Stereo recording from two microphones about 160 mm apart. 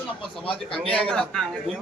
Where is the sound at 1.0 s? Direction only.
5° left (ahead or behind).